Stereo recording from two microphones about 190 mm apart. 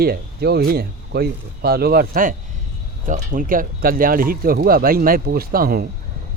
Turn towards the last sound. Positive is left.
turn(degrees=-50)  # may be behind; listen again after turning